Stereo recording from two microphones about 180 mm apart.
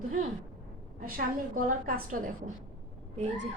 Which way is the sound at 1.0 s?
50° right (ahead or behind).